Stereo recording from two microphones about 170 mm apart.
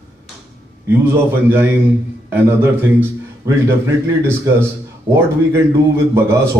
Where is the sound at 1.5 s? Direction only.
10° right (ahead or behind).